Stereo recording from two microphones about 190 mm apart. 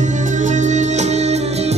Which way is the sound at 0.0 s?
40° right (ahead or behind).